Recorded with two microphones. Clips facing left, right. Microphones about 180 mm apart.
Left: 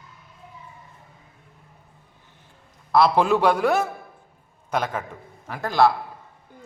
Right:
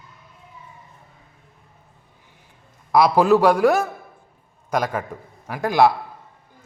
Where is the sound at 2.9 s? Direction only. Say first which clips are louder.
Right 3 dB; 10° right (ahead or behind).